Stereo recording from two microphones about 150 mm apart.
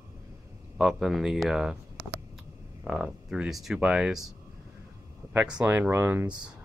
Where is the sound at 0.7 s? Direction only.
Centre (ahead or behind).